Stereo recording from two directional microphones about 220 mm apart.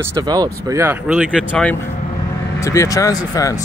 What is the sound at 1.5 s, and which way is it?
Speech, 5° left (ahead or behind).